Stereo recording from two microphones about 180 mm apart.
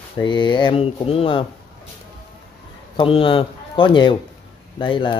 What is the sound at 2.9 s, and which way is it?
Speech, 30° left (ahead or behind).